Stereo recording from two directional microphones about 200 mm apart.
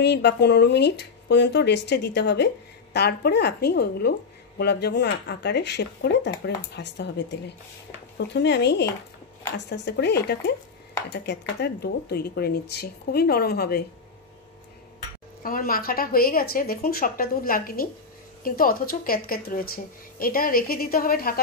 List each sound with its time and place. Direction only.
0.0 s speech: 55° left (ahead or behind)
15.4 s speech: 45° left (ahead or behind)